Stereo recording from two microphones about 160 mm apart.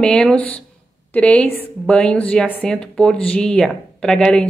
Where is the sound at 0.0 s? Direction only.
5° left (ahead or behind).